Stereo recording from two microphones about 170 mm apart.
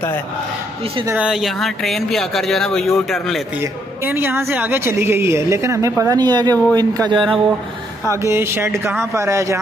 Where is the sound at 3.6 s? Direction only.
15° right (ahead or behind).